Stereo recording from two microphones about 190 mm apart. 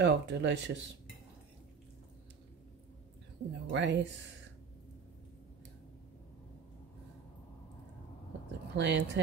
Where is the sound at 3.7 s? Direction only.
65° right (ahead or behind).